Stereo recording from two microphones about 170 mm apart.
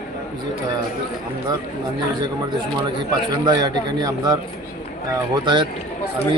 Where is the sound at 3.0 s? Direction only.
25° right (ahead or behind).